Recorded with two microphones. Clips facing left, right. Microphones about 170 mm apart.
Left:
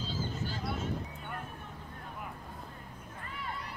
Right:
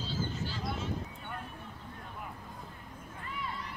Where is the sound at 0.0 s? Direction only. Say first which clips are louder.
Right 1 dB; 45° left (ahead or behind).